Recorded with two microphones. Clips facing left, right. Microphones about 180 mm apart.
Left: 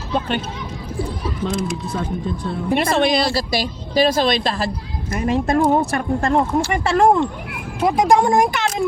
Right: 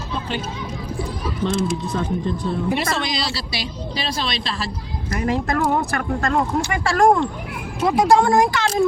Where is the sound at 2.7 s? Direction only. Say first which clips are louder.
Left 6 dB; 55° left (ahead or behind).